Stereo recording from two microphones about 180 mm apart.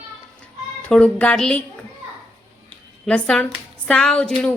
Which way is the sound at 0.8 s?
5° left (ahead or behind).